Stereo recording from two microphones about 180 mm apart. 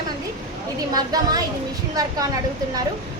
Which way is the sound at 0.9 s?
20° right (ahead or behind).